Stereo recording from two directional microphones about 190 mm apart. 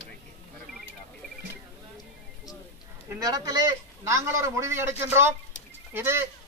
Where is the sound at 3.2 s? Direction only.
20° right (ahead or behind).